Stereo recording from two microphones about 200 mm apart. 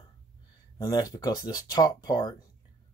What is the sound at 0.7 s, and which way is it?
Speech, 20° left (ahead or behind).